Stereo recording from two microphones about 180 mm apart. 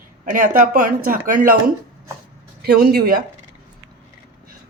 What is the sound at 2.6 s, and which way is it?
Speech, 60° right (ahead or behind).